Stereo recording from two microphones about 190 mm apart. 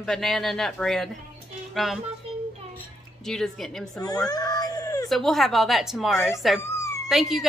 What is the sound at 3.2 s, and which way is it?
Speech, centre (ahead or behind).